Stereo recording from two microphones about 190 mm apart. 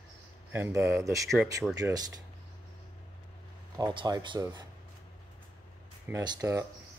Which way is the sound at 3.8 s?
25° right (ahead or behind).